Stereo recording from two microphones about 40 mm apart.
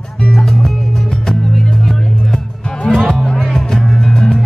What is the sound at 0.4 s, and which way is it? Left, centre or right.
Music, centre.